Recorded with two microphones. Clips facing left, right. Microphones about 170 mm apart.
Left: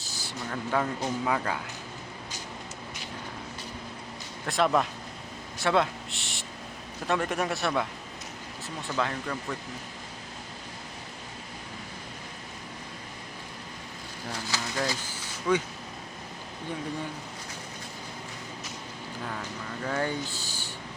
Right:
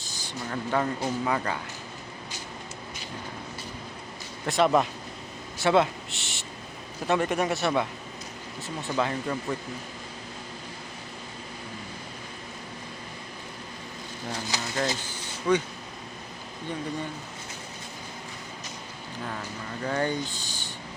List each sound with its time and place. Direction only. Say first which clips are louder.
0.0 s a sound: right 1 dB; 5° left (ahead or behind)
1.2 s speech: right 1 dB; 5° left (ahead or behind)
4.4 s a man's voice: right 3 dB; centre (ahead or behind)
8.9 s speech: right 3 dB; 5° right (ahead or behind)
9.2 s speech: right 4 dB; 20° right (ahead or behind)
14.5 s speech: left 1 dB; 20° right (ahead or behind)
15.5 s speech: right 2 dB; 5° left (ahead or behind)
19.2 s speech: right 1 dB; 5° right (ahead or behind)